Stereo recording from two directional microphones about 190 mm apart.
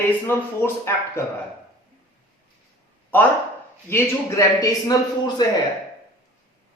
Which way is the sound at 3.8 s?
15° left (ahead or behind).